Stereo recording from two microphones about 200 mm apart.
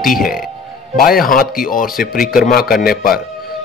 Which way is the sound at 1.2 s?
45° left (ahead or behind).